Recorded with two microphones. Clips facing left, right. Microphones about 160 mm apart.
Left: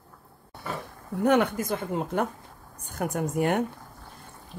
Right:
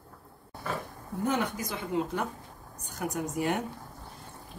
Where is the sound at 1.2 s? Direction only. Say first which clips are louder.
Left 8 dB; 55° left (ahead or behind).